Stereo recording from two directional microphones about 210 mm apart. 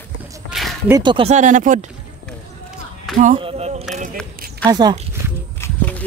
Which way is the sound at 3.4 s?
30° right (ahead or behind).